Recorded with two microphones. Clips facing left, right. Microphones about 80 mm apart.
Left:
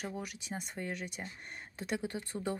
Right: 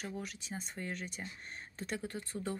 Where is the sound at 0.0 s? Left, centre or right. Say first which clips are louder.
Left 2 dB; centre.